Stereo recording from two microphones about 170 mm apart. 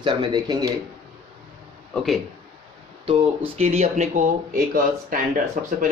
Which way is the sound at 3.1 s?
35° right (ahead or behind).